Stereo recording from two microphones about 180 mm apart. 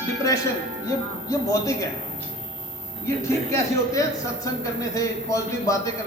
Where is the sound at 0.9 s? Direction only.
15° left (ahead or behind).